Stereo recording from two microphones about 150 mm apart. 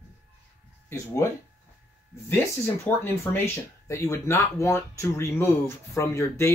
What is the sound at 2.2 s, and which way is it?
Speech, 15° left (ahead or behind).